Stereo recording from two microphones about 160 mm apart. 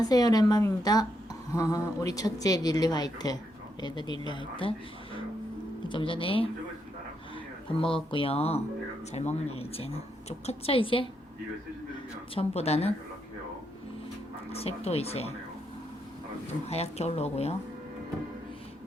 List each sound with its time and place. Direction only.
0.0 s speech: 25° left (ahead or behind)
5.9 s a woman's voice: 30° left (ahead or behind)
7.8 s a woman's voice: 35° left (ahead or behind)
12.3 s a woman's voice: 40° left (ahead or behind)
14.5 s a woman's voice: 40° left (ahead or behind)
16.6 s a woman's voice: 40° left (ahead or behind)